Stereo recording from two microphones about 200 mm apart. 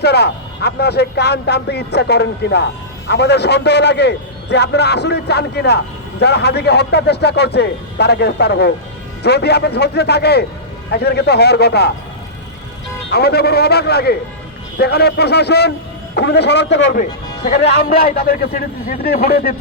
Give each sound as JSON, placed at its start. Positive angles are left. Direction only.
{"t": 0.0, "sound": "a man's voice", "side_deg": 55}
{"t": 13.1, "sound": "a man's voice", "side_deg": 55}
{"t": 17.0, "sound": "speech", "side_deg": 35}
{"t": 17.8, "sound": "a man's voice", "side_deg": 50}